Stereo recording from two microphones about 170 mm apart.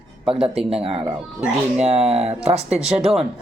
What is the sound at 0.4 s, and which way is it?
Speech, 35° right (ahead or behind).